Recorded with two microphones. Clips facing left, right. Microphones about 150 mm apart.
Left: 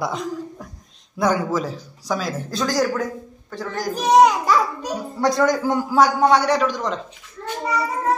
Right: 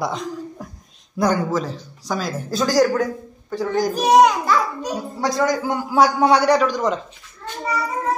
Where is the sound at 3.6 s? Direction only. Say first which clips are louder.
Right 6 dB; 15° right (ahead or behind).